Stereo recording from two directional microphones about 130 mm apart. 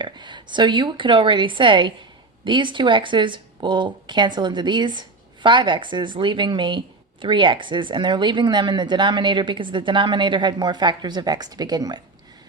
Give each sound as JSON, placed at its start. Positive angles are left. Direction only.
{"t": 0.0, "sound": "speech", "side_deg": -35}